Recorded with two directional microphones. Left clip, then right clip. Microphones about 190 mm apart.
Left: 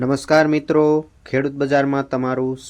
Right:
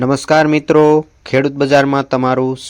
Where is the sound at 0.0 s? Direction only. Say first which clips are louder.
Right 4 dB; 20° right (ahead or behind).